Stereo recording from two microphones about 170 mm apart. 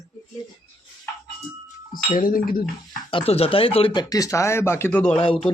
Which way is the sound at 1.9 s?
55° left (ahead or behind).